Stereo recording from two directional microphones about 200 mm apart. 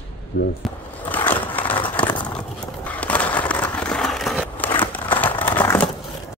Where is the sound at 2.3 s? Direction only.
5° left (ahead or behind).